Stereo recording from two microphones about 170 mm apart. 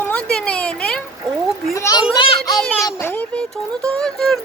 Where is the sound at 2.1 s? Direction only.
30° left (ahead or behind).